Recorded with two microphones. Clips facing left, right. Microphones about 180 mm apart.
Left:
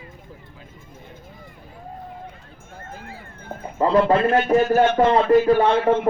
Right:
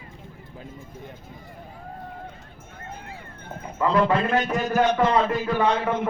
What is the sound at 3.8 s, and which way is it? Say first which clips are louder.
A man's voice: left 4 dB; 35° left (ahead or behind).